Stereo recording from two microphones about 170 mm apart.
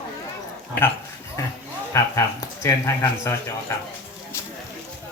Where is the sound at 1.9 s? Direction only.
15° left (ahead or behind).